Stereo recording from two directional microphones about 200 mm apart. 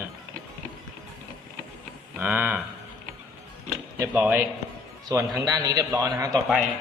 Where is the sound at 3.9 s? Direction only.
5° right (ahead or behind).